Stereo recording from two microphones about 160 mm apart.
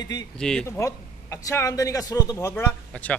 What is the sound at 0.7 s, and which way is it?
A man's voice, 15° left (ahead or behind).